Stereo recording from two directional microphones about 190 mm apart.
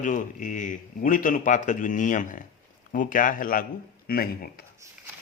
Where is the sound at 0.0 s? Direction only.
45° left (ahead or behind).